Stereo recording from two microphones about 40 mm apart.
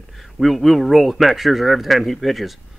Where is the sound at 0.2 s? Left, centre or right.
Centre.